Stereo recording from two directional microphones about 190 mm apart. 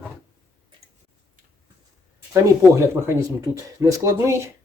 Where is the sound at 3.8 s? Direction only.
15° right (ahead or behind).